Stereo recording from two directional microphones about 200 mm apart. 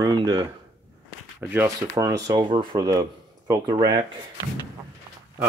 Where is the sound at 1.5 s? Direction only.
15° right (ahead or behind).